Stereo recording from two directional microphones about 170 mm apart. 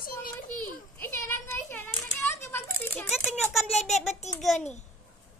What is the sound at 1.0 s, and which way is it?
Speech, 15° left (ahead or behind).